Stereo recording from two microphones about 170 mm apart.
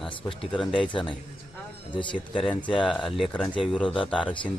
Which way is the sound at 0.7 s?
30° left (ahead or behind).